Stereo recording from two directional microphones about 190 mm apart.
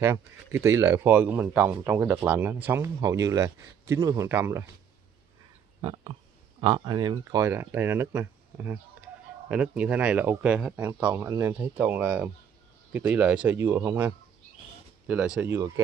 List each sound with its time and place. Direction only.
0.0 s speech: 15° right (ahead or behind)
5.8 s speech: 25° right (ahead or behind)